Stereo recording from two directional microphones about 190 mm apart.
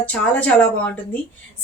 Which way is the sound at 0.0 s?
5° left (ahead or behind).